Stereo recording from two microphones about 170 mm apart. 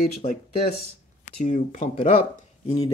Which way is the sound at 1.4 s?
45° left (ahead or behind).